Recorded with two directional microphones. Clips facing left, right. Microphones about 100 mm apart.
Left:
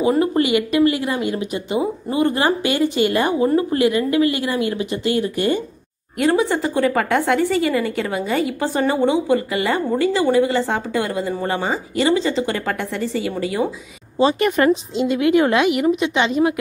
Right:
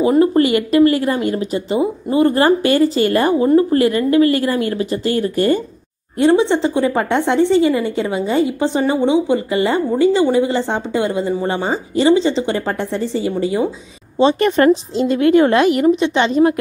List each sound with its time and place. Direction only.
0.4 s a woman's voice: 40° right (ahead or behind)
6.1 s a woman's voice: 25° right (ahead or behind)